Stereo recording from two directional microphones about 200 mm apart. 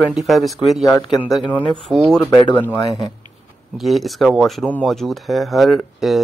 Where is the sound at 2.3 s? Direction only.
20° left (ahead or behind).